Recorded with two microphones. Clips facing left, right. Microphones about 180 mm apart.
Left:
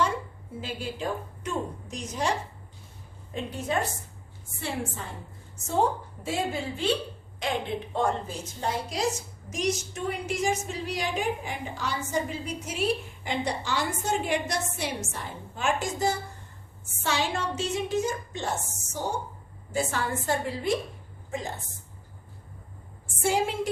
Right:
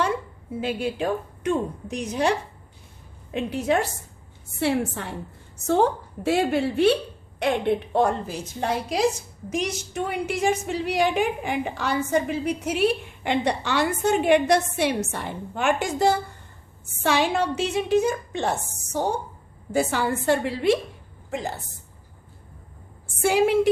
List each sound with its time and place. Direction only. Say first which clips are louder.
0.6 s a woman's voice: right 7 dB; 65° right (ahead or behind)
3.3 s a woman's voice: right 6 dB; 75° right (ahead or behind)
23.2 s a woman's voice: right 6 dB; 70° right (ahead or behind)